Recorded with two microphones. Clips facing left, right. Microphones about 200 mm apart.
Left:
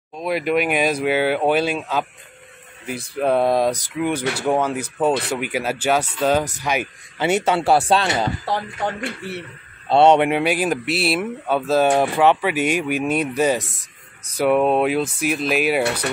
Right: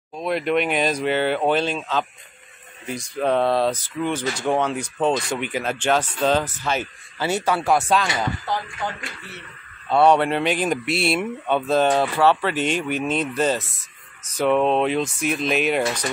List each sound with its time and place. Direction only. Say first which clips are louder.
0.1 s speech: left 1 dB; 5° left (ahead or behind)
3.2 s speech: left 2 dB; 10° left (ahead or behind); by 8.9 s 40° left (ahead or behind)
9.8 s speech: left 3 dB; 25° left (ahead or behind); by 15.8 s 5° left (ahead or behind)